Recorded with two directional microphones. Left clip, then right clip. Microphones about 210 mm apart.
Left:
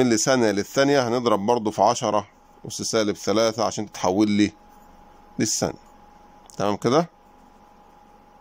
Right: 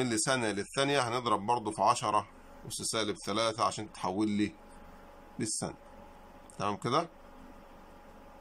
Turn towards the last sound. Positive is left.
turn(degrees=35)  # may be behind; listen again after turning